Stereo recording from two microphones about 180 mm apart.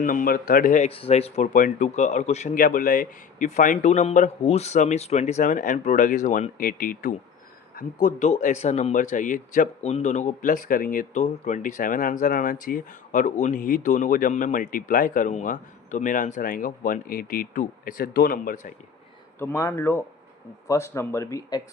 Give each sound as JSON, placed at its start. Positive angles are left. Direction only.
{"t": 0.0, "sound": "speech", "side_deg": 50}
{"t": 19.4, "sound": "speech", "side_deg": 15}